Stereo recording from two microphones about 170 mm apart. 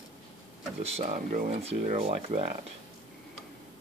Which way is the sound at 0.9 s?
45° right (ahead or behind).